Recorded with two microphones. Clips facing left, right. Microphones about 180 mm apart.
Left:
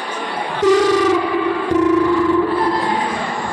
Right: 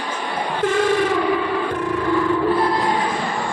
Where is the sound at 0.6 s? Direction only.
90° left.